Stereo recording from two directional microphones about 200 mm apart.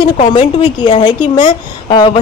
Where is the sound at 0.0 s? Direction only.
25° left (ahead or behind).